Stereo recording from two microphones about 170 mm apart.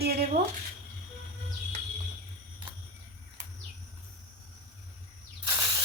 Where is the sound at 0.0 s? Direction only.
70° right (ahead or behind).